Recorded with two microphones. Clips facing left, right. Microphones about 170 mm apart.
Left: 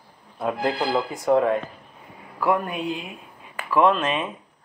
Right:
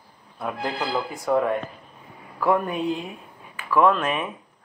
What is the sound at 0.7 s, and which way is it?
Speech, 25° left (ahead or behind).